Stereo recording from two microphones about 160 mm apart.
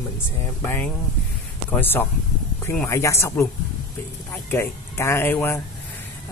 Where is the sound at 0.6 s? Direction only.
10° left (ahead or behind).